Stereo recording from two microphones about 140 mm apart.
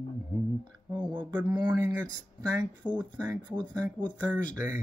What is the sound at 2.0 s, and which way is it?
Speech, 30° right (ahead or behind).